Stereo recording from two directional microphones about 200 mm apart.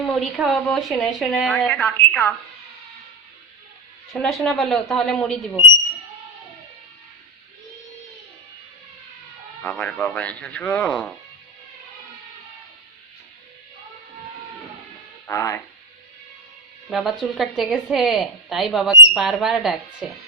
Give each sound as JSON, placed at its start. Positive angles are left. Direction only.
{"t": 0.0, "sound": "a woman's voice", "side_deg": 0}
{"t": 4.1, "sound": "a woman's voice", "side_deg": 0}
{"t": 9.6, "sound": "speech", "side_deg": 5}
{"t": 15.3, "sound": "speech", "side_deg": 15}
{"t": 16.9, "sound": "a woman's voice", "side_deg": 0}